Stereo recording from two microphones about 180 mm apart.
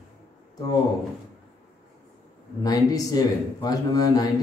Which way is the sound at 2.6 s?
20° left (ahead or behind).